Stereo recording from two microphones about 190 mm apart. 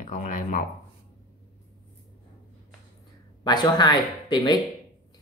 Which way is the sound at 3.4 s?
20° left (ahead or behind).